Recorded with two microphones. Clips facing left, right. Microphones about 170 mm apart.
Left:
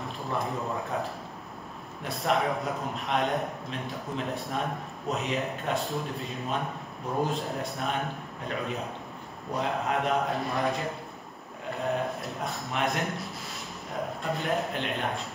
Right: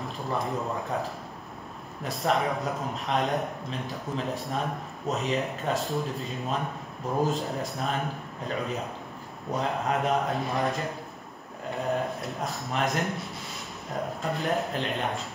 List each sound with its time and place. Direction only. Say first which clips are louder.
0.3 s a man's voice: right 1 dB; centre (ahead or behind)